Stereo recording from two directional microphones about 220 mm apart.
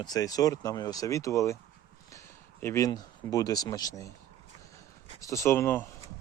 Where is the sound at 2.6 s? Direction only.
15° left (ahead or behind).